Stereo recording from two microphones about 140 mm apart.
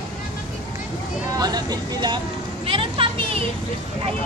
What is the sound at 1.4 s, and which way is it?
Vehicle, 30° right (ahead or behind).